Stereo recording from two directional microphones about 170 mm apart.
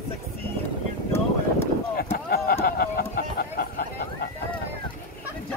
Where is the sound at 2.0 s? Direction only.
60° left (ahead or behind).